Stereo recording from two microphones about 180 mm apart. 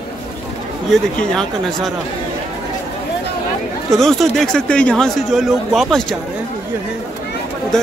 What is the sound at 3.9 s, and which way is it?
A man's voice, centre (ahead or behind).